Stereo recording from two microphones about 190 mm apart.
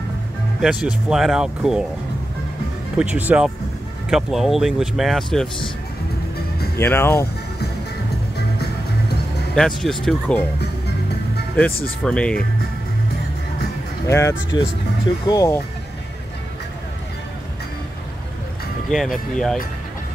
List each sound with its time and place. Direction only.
0.6 s speech: 5° right (ahead or behind)
3.0 s speech: 10° right (ahead or behind)
6.8 s speech: 10° left (ahead or behind)
9.6 s speech: centre (ahead or behind)
12.0 s speech: 5° left (ahead or behind)
14.0 s speech: 15° left (ahead or behind)
18.9 s speech: centre (ahead or behind)